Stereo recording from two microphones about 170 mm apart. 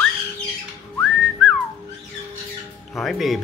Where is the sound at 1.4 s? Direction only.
Centre (ahead or behind).